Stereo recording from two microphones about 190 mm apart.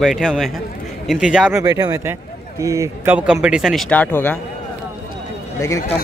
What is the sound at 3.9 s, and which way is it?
Speech, 10° left (ahead or behind).